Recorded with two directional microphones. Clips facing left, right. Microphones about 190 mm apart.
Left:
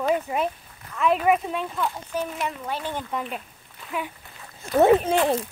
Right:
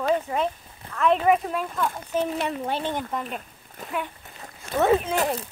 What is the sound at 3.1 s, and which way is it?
Speech, centre (ahead or behind).